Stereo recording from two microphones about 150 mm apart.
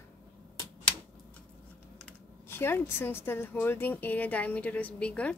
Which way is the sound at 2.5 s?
15° left (ahead or behind).